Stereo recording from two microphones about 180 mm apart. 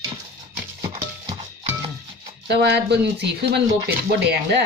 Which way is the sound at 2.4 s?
65° right (ahead or behind).